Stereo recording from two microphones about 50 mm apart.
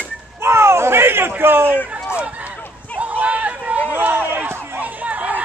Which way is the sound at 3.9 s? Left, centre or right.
Right.